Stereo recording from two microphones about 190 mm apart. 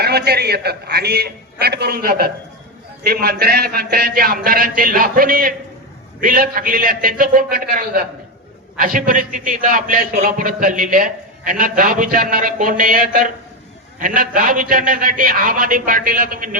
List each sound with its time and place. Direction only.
0.0 s a man's voice: 60° right (ahead or behind)